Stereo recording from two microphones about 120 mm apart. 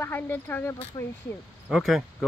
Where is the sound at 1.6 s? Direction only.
5° right (ahead or behind).